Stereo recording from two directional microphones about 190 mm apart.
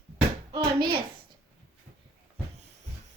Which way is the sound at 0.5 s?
25° right (ahead or behind).